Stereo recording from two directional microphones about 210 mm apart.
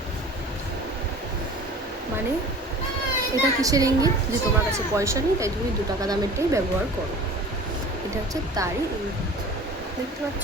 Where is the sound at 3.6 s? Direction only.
15° right (ahead or behind).